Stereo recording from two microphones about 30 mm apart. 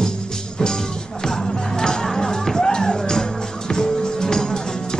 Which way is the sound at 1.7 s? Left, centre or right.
Centre.